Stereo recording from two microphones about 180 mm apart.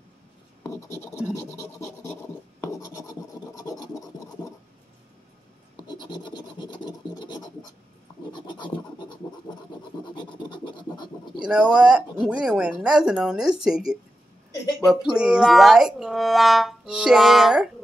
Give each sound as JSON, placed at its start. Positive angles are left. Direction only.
{"t": 0.7, "sound": "scratch", "side_deg": 15}
{"t": 5.8, "sound": "scratch", "side_deg": 25}
{"t": 11.4, "sound": "speech", "side_deg": -5}